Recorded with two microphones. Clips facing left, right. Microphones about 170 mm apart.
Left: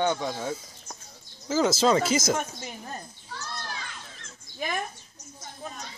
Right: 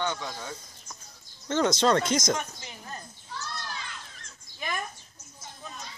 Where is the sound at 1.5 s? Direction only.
5° left (ahead or behind).